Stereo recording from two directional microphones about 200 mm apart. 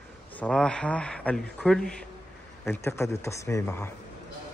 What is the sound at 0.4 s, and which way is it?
A man's voice, 5° left (ahead or behind).